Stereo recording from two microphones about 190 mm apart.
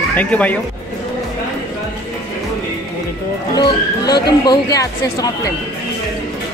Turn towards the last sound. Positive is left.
turn(degrees=20)  # may be behind; listen again after turning